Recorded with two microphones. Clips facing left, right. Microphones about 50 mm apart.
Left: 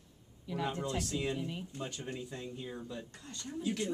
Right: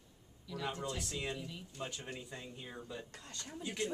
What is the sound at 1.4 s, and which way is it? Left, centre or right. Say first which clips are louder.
Speech: left 7 dB; left.